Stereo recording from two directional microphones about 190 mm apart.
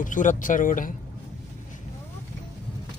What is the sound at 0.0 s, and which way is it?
Speech, 45° left (ahead or behind).